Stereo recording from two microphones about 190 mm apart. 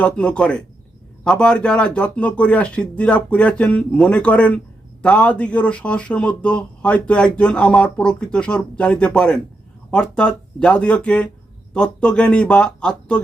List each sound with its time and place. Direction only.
0.0 s speech: 5° left (ahead or behind)